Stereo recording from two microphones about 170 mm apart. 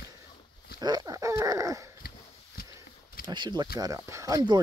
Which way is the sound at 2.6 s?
60° left (ahead or behind).